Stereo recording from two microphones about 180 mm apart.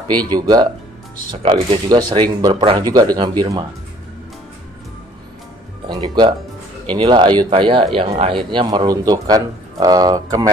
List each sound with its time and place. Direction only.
0.1 s a man's voice: 25° right (ahead or behind)
5.9 s a man's voice: 25° right (ahead or behind)